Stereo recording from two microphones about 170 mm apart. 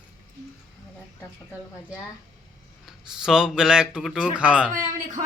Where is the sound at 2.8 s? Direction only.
5° right (ahead or behind).